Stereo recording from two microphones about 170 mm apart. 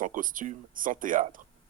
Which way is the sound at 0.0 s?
50° right (ahead or behind).